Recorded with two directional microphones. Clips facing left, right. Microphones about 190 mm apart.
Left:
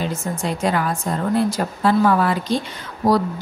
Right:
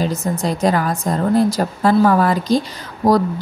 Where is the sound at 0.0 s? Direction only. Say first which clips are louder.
Right 4 dB; 35° right (ahead or behind).